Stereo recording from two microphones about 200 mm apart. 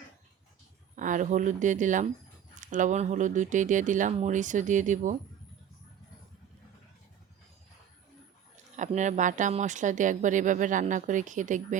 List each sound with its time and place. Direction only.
0.9 s speech: 40° right (ahead or behind)
8.7 s speech: 35° right (ahead or behind)